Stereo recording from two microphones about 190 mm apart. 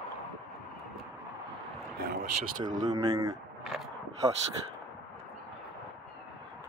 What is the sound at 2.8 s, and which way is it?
Speech, 20° right (ahead or behind).